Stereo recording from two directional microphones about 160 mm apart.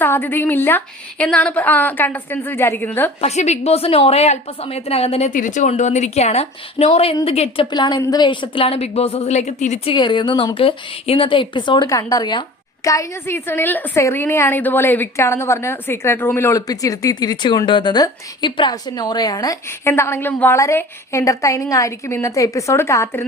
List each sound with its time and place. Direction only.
0.0 s a woman's voice: 15° left (ahead or behind)
3.2 s a woman's voice: 45° left (ahead or behind)
5.3 s a woman's voice: 55° left (ahead or behind)
9.9 s a woman's voice: 30° left (ahead or behind)